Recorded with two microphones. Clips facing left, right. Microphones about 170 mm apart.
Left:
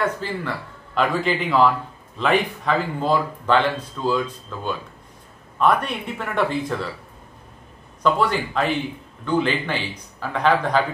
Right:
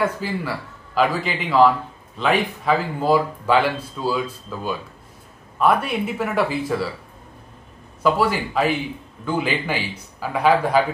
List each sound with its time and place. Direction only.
0.0 s a man's voice: 10° right (ahead or behind)
8.0 s a man's voice: 5° right (ahead or behind)